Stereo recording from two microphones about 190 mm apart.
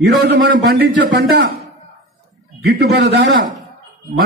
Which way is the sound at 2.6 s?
55° right (ahead or behind).